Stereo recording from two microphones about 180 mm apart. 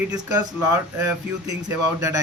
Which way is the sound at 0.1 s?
20° right (ahead or behind).